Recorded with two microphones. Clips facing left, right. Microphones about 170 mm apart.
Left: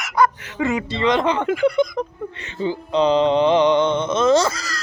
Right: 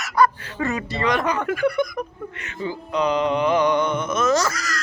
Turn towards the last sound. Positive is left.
turn(degrees=30)  # may be behind; listen again after turning